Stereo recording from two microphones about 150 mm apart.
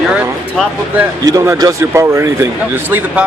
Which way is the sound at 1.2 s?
25° right (ahead or behind).